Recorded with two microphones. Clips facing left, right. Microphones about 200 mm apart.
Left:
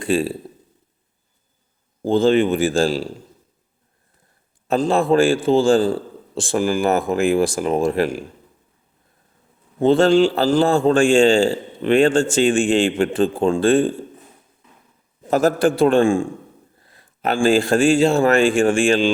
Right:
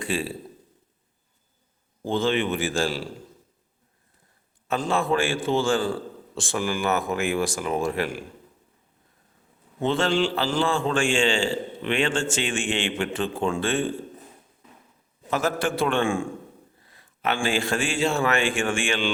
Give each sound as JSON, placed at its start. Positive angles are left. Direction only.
{"t": 0.0, "sound": "speech", "side_deg": 35}
{"t": 2.0, "sound": "speech", "side_deg": 35}
{"t": 4.7, "sound": "speech", "side_deg": 35}
{"t": 9.8, "sound": "speech", "side_deg": 35}
{"t": 15.2, "sound": "speech", "side_deg": 40}